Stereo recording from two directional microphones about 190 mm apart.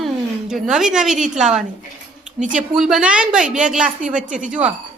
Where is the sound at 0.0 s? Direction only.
Centre (ahead or behind).